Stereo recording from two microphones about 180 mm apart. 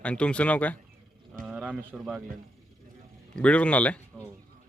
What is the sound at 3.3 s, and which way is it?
Speech, 5° left (ahead or behind).